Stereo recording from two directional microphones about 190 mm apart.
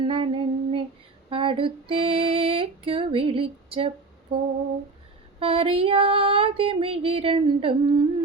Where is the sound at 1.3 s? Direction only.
25° right (ahead or behind).